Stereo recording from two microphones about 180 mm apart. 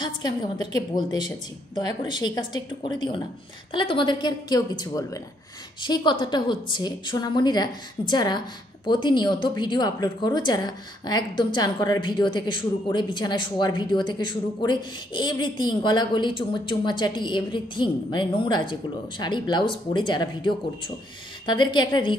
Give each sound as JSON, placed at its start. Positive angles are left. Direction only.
{"t": 0.0, "sound": "a woman's voice", "side_deg": 25}